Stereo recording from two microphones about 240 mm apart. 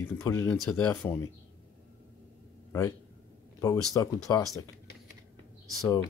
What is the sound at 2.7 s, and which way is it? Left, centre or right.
A man's voice, centre.